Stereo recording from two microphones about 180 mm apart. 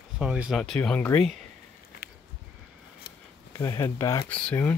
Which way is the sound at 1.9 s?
60° left (ahead or behind).